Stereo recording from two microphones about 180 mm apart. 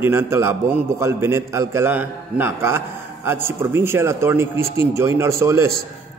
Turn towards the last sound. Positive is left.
turn(degrees=-15)  # may be behind; listen again after turning